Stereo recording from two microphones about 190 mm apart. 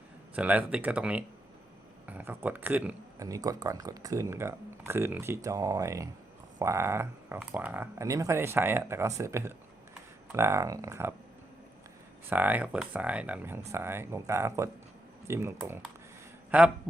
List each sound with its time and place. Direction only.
0.3 s speech: 10° right (ahead or behind)
12.3 s speech: 10° right (ahead or behind)